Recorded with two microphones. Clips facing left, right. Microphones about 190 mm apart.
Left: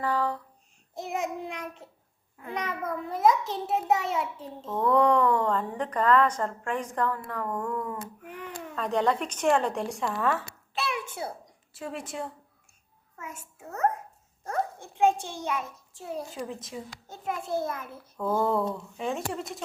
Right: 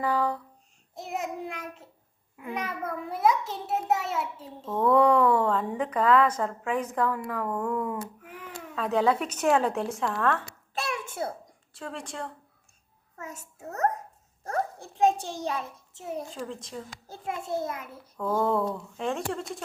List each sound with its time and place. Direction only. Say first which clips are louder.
0.0 s a sound: right 1 dB; 10° right (ahead or behind)
0.9 s child singing: left 2 dB; centre (ahead or behind)
2.4 s a child's voice: even; 10° right (ahead or behind)
10.8 s a sound: even; 45° right (ahead or behind)
11.7 s speech: left 2 dB; 10° left (ahead or behind)
13.1 s a child's voice: right 1 dB; 35° right (ahead or behind)
14.8 s a sound: even; 35° right (ahead or behind)
16.3 s a child's voice: even; 5° left (ahead or behind)
17.1 s a child's voice: left 1 dB; 25° right (ahead or behind)
18.2 s a child's voice: even; 5° left (ahead or behind)